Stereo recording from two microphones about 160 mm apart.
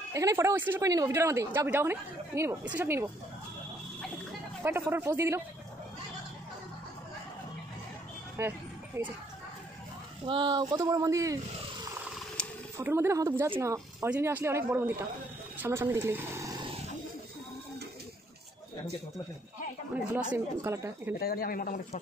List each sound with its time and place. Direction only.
0.1 s speech: 20° right (ahead or behind)
4.6 s speech: 15° right (ahead or behind)
8.4 s a sound: 15° right (ahead or behind)
10.2 s speech: 30° right (ahead or behind)
12.7 s speech: 15° right (ahead or behind)
20.2 s speech: 15° right (ahead or behind)
21.2 s speech: 70° left (ahead or behind)